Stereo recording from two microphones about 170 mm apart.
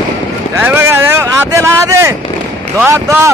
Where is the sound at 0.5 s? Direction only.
15° right (ahead or behind).